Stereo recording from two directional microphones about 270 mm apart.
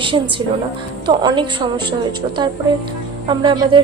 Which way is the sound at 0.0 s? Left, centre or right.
Centre.